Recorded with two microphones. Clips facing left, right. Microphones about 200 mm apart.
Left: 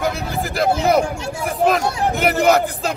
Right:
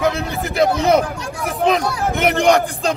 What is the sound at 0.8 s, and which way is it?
A man's voice, centre (ahead or behind).